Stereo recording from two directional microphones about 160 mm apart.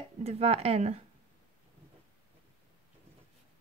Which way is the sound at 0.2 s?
40° right (ahead or behind).